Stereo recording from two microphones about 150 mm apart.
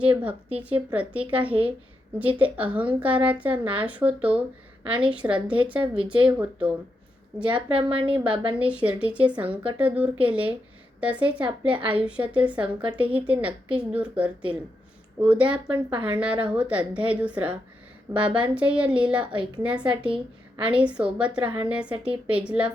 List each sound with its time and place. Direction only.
0.0 s a woman's voice: 10° right (ahead or behind)
5.8 s speech: 35° right (ahead or behind)
6.2 s a woman's voice: 10° right (ahead or behind)
7.9 s speech: 35° right (ahead or behind)
8.1 s a woman's voice: 10° right (ahead or behind)